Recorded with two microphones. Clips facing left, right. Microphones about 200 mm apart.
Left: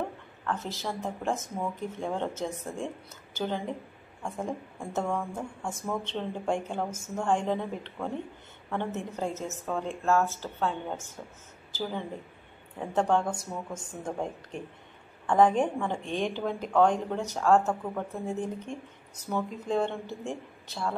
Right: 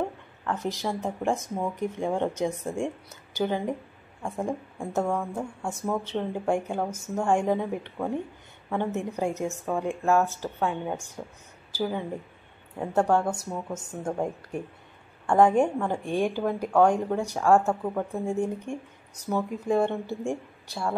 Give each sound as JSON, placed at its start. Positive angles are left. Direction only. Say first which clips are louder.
{"t": 0.5, "sound": "speech", "louder": "right 4 dB", "side_deg": -15}
{"t": 4.7, "sound": "speech", "louder": "right 3 dB", "side_deg": -10}
{"t": 12.7, "sound": "speech", "louder": "right 3 dB", "side_deg": -10}